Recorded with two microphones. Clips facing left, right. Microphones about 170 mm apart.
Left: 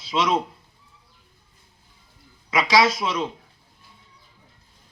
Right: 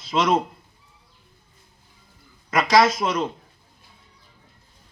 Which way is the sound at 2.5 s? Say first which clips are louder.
Right 2 dB; 50° right (ahead or behind).